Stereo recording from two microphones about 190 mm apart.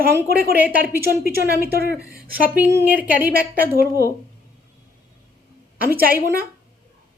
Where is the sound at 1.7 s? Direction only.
55° right (ahead or behind).